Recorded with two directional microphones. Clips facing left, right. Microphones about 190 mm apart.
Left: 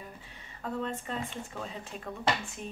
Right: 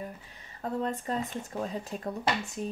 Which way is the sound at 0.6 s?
40° right (ahead or behind).